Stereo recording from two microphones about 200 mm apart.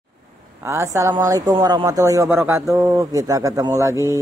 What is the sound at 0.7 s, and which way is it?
Speech, 15° right (ahead or behind).